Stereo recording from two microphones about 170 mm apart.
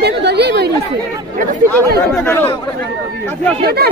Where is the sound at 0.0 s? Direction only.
80° right.